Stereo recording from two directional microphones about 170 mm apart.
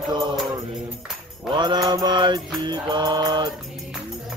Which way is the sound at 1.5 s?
25° right (ahead or behind).